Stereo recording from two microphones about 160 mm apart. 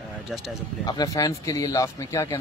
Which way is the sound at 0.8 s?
25° left (ahead or behind).